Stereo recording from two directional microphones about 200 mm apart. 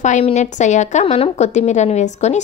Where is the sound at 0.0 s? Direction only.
35° left (ahead or behind).